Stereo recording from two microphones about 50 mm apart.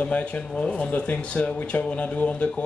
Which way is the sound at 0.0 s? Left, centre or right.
Left.